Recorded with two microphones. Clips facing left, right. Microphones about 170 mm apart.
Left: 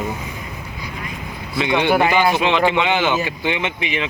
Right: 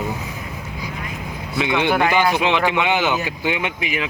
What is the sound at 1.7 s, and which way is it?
Speech, 15° left (ahead or behind).